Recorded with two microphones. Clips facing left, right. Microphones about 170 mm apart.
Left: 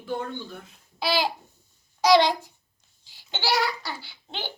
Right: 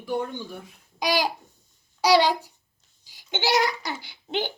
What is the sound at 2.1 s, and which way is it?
A woman's voice, 10° right (ahead or behind).